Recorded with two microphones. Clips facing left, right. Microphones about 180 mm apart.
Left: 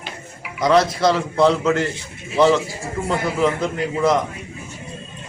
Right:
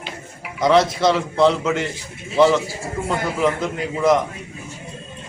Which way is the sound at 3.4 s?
Centre (ahead or behind).